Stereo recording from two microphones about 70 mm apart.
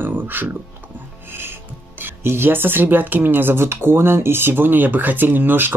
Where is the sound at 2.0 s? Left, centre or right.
Right.